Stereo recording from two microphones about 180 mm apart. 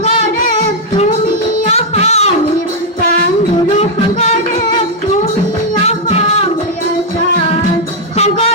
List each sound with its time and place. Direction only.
0.0 s music: 45° left (ahead or behind)
1.7 s music: 35° left (ahead or behind)
5.8 s music: 35° left (ahead or behind)
8.1 s music: 35° left (ahead or behind)